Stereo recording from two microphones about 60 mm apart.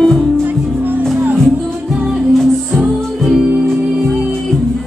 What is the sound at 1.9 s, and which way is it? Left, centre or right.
Music, centre.